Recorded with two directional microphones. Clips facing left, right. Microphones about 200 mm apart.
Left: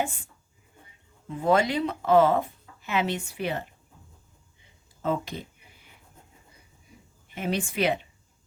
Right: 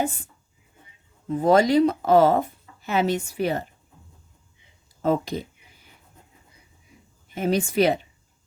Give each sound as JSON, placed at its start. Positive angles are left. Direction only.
{"t": 1.3, "sound": "speech", "side_deg": -40}
{"t": 5.0, "sound": "speech", "side_deg": -40}
{"t": 7.3, "sound": "speech", "side_deg": -40}